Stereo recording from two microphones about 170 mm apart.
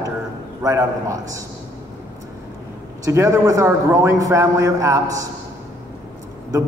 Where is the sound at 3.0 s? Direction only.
15° right (ahead or behind).